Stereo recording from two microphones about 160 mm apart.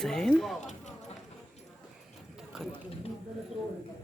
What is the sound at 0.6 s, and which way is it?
Clip-clop, 45° left (ahead or behind).